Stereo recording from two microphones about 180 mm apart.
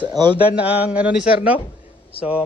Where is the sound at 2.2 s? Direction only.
10° left (ahead or behind).